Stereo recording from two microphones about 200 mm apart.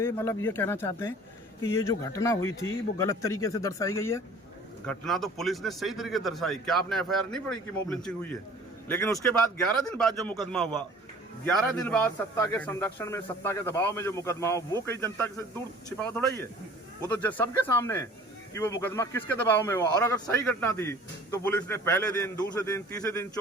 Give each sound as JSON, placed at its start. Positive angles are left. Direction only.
{"t": 0.0, "sound": "a man's voice", "side_deg": 15}
{"t": 4.9, "sound": "a man's voice", "side_deg": 0}